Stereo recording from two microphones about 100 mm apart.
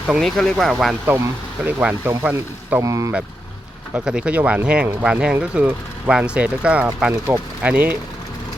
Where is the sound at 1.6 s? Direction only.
15° right (ahead or behind).